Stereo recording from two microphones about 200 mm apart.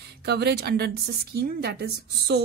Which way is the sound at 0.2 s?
55° right (ahead or behind).